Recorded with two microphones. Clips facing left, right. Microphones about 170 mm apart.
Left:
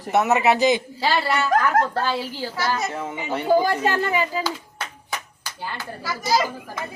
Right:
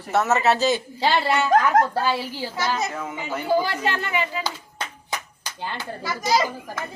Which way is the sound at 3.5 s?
45° left (ahead or behind).